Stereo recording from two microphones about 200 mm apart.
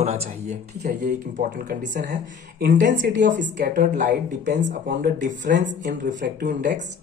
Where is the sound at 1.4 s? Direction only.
45° right (ahead or behind).